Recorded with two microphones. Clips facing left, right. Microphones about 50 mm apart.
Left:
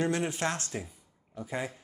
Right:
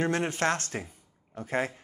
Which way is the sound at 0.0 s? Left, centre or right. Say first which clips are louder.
Right 2 dB; right.